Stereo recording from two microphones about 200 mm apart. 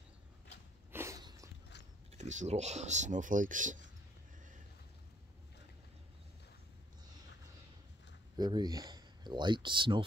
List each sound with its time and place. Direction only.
0.9 s a sound: 15° right (ahead or behind)
2.1 s speech: 35° right (ahead or behind)
8.4 s speech: 20° right (ahead or behind)